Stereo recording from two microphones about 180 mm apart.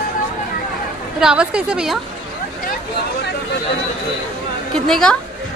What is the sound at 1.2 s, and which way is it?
Speech, 5° right (ahead or behind).